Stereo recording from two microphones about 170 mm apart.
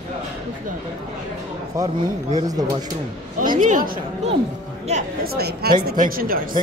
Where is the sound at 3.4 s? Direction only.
50° right (ahead or behind).